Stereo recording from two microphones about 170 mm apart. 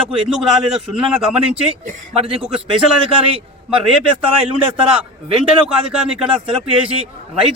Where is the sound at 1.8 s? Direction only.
50° right (ahead or behind).